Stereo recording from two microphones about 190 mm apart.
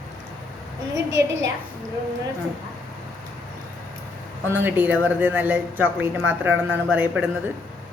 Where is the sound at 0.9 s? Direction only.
15° right (ahead or behind).